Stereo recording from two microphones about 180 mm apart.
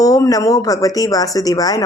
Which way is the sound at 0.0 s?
20° left (ahead or behind).